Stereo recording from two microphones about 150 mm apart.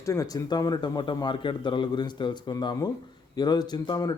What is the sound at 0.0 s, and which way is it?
A man's voice, 20° left (ahead or behind).